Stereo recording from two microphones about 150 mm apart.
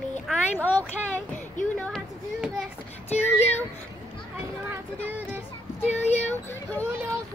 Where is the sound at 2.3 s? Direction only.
5° right (ahead or behind).